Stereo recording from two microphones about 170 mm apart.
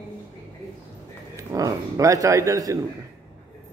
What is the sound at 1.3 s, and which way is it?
Speech, 20° right (ahead or behind).